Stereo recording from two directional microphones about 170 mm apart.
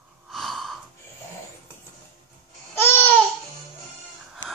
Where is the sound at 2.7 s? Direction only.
15° left (ahead or behind).